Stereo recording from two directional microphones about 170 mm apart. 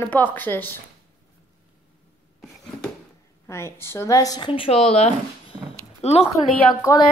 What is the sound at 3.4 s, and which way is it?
A woman's voice, 15° left (ahead or behind).